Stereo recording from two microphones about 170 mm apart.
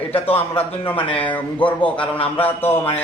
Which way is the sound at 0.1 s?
35° left (ahead or behind).